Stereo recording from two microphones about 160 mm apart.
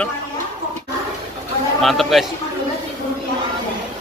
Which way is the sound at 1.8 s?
Centre (ahead or behind).